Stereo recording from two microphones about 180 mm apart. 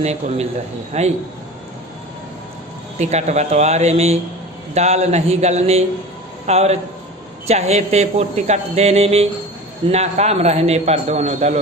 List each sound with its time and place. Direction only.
0.0 s speech: 35° right (ahead or behind)
3.0 s speech: 40° right (ahead or behind)